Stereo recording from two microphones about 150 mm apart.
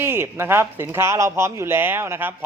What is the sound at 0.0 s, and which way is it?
A man's voice, 15° right (ahead or behind).